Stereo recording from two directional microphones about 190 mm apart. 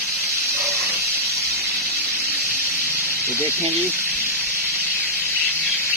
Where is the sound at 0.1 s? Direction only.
10° right (ahead or behind).